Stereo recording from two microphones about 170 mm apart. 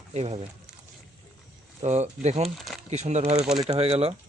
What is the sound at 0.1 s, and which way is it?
Speech, 40° right (ahead or behind).